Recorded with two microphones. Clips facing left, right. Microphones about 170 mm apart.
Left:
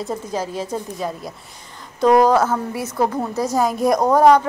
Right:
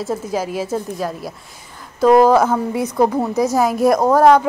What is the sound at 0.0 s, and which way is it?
A woman's voice, 5° right (ahead or behind).